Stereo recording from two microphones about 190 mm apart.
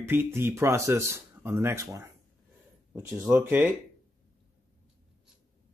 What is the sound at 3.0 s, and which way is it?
Speech, 15° right (ahead or behind).